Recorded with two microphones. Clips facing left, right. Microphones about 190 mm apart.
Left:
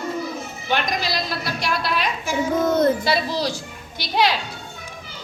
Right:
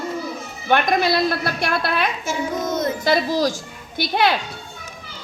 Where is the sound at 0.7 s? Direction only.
55° right (ahead or behind).